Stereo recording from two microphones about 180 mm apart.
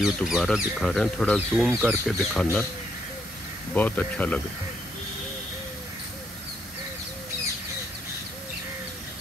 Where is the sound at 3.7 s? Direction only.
10° left (ahead or behind).